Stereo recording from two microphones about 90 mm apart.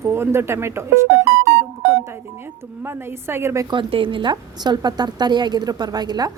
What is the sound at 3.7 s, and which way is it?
Speech, 70° right (ahead or behind).